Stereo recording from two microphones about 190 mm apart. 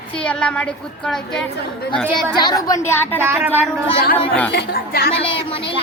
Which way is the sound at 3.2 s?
10° right (ahead or behind).